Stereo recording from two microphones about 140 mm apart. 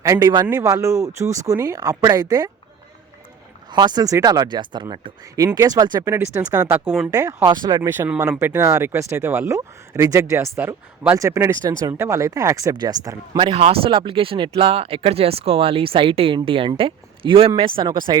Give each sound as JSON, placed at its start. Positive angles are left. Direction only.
{"t": 0.0, "sound": "speech", "side_deg": -25}
{"t": 3.7, "sound": "speech", "side_deg": -30}
{"t": 7.1, "sound": "speech", "side_deg": -25}
{"t": 7.8, "sound": "speech", "side_deg": -15}
{"t": 13.4, "sound": "speech", "side_deg": -45}